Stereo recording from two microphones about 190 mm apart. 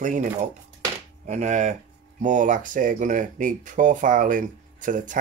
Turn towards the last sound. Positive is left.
turn(degrees=-45)  # may be behind; listen again after turning